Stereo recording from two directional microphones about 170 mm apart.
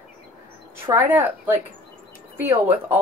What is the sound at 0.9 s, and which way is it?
Speech, 10° right (ahead or behind).